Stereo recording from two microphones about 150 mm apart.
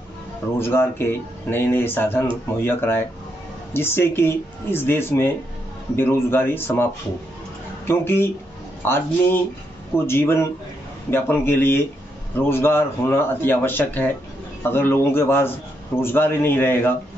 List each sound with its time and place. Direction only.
0.6 s speech: 15° left (ahead or behind)